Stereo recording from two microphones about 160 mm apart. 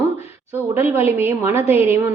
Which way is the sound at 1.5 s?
40° left (ahead or behind).